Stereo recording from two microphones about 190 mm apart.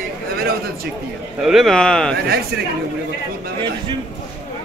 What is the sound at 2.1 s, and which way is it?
Speech, 55° right (ahead or behind).